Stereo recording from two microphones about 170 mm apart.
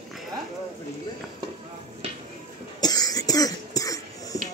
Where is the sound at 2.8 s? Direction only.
20° left (ahead or behind).